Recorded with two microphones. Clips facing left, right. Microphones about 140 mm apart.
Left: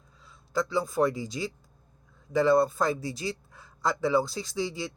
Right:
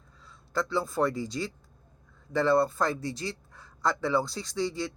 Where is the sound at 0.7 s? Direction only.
15° left (ahead or behind).